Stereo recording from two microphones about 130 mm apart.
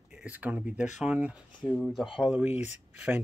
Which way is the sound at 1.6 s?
10° left (ahead or behind).